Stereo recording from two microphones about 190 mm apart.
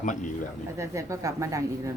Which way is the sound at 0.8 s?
15° right (ahead or behind).